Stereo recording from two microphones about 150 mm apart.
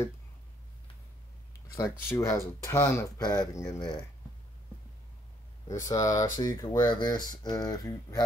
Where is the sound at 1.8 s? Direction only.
20° left (ahead or behind).